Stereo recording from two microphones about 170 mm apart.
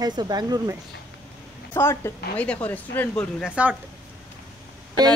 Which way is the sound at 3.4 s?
10° right (ahead or behind).